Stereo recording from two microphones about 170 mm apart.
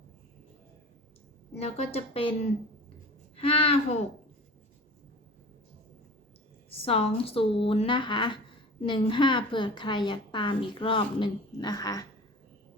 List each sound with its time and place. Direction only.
1.5 s a woman's voice: 35° left (ahead or behind)
6.8 s a woman's voice: 35° left (ahead or behind)